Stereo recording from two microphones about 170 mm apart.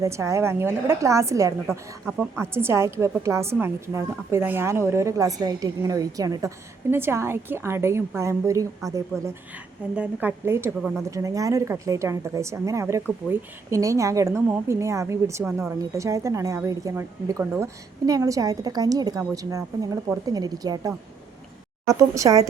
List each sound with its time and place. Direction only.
0.0 s a woman's voice: 15° right (ahead or behind)